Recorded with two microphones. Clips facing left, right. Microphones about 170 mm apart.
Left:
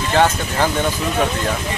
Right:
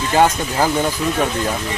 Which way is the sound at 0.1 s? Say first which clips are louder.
Right 1 dB; 10° right (ahead or behind).